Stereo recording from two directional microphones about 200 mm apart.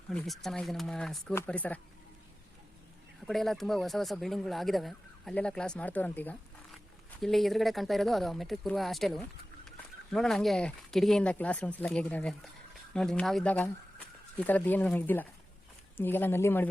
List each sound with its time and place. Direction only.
0.1 s speech: 5° left (ahead or behind)
3.2 s speech: centre (ahead or behind)